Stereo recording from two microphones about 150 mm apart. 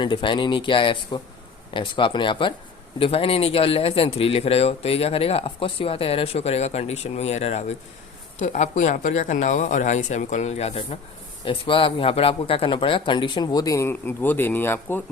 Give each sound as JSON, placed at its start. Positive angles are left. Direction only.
{"t": 0.0, "sound": "speech", "side_deg": 35}